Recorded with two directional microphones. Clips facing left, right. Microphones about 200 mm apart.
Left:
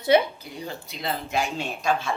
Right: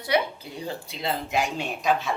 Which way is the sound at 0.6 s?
25° right (ahead or behind).